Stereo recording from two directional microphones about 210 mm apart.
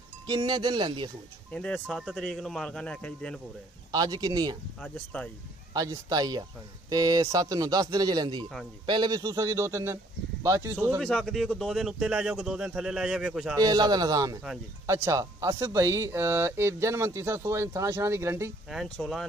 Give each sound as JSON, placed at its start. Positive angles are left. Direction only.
{"t": 0.3, "sound": "speech", "side_deg": -20}
{"t": 1.5, "sound": "a man's voice", "side_deg": 5}
{"t": 3.9, "sound": "speech", "side_deg": -20}
{"t": 4.8, "sound": "a man's voice", "side_deg": 5}
{"t": 5.7, "sound": "speech", "side_deg": -15}
{"t": 11.0, "sound": "a man's voice", "side_deg": 5}
{"t": 13.6, "sound": "speech", "side_deg": -20}
{"t": 18.7, "sound": "a man's voice", "side_deg": 0}